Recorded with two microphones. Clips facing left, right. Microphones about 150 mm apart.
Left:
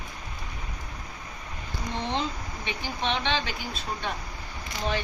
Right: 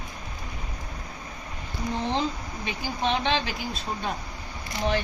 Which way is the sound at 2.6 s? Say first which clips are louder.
Right 3 dB; 35° right (ahead or behind).